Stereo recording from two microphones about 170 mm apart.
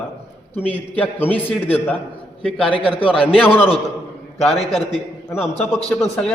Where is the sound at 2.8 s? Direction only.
30° left (ahead or behind).